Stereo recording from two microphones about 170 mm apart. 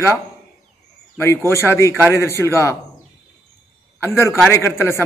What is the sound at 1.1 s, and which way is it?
A man's voice, 15° left (ahead or behind).